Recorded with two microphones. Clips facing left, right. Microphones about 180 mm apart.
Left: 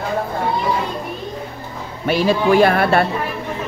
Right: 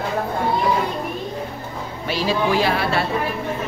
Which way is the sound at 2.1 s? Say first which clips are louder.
Left 5 dB; 55° left (ahead or behind).